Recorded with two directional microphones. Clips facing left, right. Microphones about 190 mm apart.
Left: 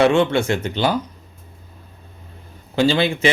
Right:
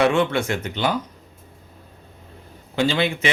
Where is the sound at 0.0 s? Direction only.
25° left (ahead or behind).